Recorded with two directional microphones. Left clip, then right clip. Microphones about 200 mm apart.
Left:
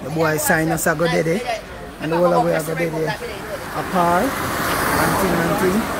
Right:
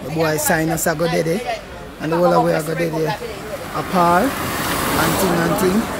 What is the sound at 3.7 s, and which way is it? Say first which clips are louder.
Speech: right 2 dB; 20° right (ahead or behind).